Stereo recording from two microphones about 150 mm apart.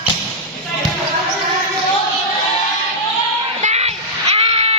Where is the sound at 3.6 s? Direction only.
45° right (ahead or behind).